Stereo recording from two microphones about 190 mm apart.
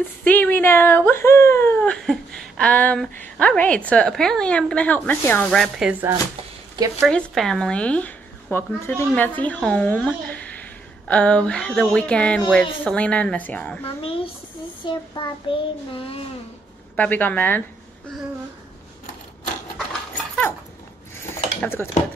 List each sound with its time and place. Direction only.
0.2 s speech: 10° left (ahead or behind); by 6.1 s 10° right (ahead or behind)
7.1 s speech: 5° left (ahead or behind)
13.8 s child singing: 30° left (ahead or behind)
16.9 s speech: 10° left (ahead or behind)
21.2 s dishes: 10° left (ahead or behind)